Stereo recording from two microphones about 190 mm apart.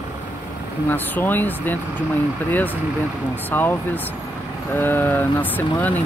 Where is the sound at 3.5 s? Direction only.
10° left (ahead or behind).